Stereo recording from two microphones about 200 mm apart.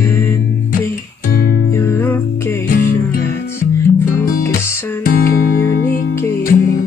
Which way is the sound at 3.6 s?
45° left (ahead or behind).